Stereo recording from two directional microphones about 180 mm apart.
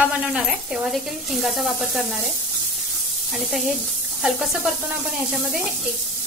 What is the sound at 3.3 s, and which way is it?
Speech, centre (ahead or behind).